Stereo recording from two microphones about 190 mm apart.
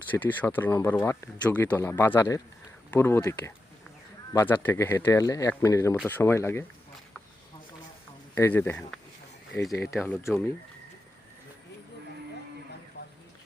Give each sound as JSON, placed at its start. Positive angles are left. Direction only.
{"t": 0.1, "sound": "speech", "side_deg": 10}
{"t": 8.4, "sound": "speech", "side_deg": 10}
{"t": 13.0, "sound": "a sound", "side_deg": 60}